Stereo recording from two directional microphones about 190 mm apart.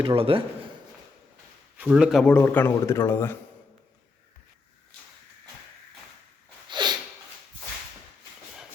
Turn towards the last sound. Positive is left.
turn(degrees=-25)  # may be behind; listen again after turning